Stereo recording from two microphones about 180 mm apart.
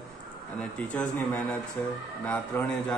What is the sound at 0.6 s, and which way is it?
A man's voice, 5° left (ahead or behind).